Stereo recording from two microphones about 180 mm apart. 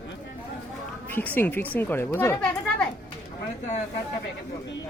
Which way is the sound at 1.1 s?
10° left (ahead or behind).